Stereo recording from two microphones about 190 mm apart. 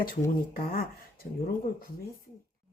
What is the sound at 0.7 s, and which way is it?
Speech, 50° left (ahead or behind).